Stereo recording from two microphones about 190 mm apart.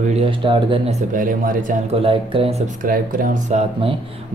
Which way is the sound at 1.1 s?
45° right (ahead or behind).